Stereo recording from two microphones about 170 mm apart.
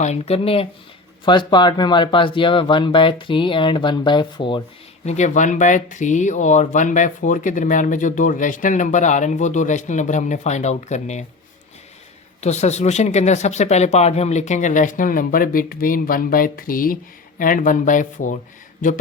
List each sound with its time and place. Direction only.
0.0 s speech: 40° left (ahead or behind)
5.0 s speech: 45° left (ahead or behind)
12.4 s speech: 40° left (ahead or behind)